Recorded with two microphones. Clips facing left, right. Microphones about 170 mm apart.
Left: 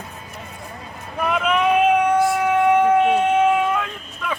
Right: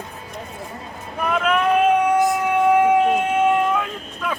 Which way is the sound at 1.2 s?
5° left (ahead or behind).